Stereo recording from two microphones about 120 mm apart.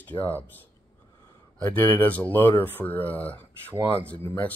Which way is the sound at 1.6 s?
15° left (ahead or behind).